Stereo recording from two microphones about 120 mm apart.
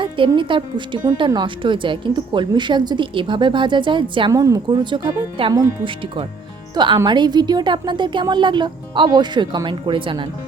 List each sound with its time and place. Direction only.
0.0 s a woman's voice: 45° right (ahead or behind)
4.3 s a woman's voice: 25° right (ahead or behind); by 10.2 s 45° right (ahead or behind)